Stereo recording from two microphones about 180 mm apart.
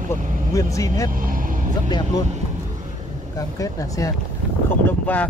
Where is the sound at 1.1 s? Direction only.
50° right (ahead or behind).